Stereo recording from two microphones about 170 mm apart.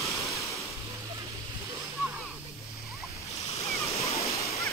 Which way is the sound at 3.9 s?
40° left (ahead or behind).